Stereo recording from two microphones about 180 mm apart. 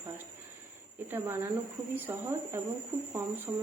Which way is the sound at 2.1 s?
15° right (ahead or behind).